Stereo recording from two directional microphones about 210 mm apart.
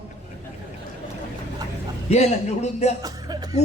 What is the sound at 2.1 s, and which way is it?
Speech, 30° left (ahead or behind).